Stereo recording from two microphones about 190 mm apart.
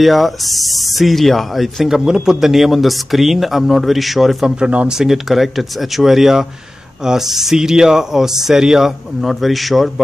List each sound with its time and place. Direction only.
0.0 s speech: centre (ahead or behind)